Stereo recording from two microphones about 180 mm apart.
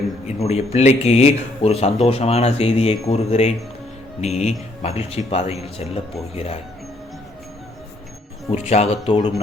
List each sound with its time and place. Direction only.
0.3 s speech: 35° left (ahead or behind)
8.4 s speech: 35° left (ahead or behind)